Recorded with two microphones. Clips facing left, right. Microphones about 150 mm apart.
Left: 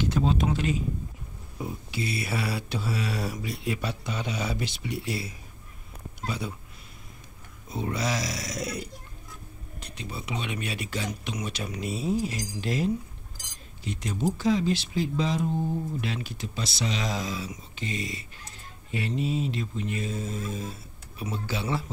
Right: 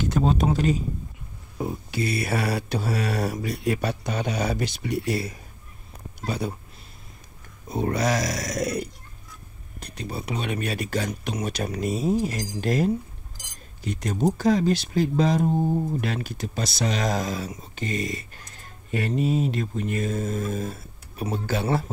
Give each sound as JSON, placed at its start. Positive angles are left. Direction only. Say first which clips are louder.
{"t": 0.0, "sound": "speech", "louder": "right 3 dB", "side_deg": -45}
{"t": 7.7, "sound": "speech", "louder": "right 6 dB", "side_deg": -50}